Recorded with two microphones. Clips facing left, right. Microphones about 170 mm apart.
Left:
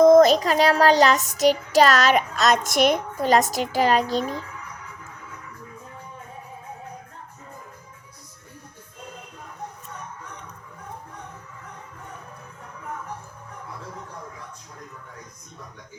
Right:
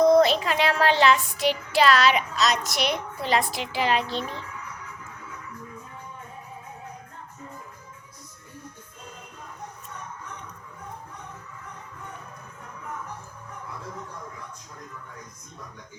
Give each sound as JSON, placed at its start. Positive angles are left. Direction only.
{"t": 0.0, "sound": "child singing", "side_deg": 45}